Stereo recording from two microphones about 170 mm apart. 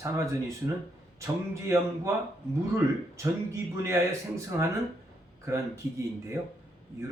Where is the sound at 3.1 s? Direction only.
15° right (ahead or behind).